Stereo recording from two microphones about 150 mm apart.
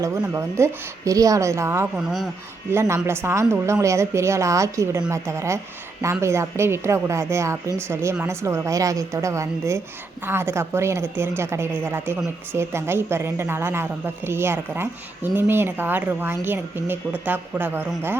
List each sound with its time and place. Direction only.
0.3 s a woman's voice: 20° right (ahead or behind)